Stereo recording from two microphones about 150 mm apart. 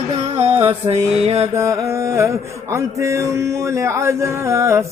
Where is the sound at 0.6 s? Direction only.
45° right (ahead or behind).